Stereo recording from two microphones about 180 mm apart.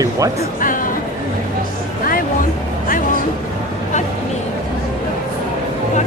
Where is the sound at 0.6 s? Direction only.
50° left (ahead or behind).